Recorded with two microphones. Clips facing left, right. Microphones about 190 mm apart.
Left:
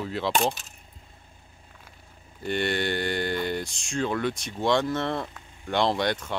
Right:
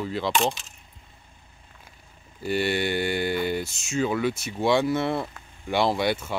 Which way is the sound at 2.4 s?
5° right (ahead or behind).